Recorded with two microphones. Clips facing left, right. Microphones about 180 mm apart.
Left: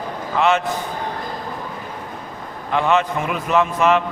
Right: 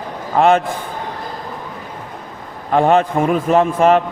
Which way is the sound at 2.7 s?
50° right (ahead or behind).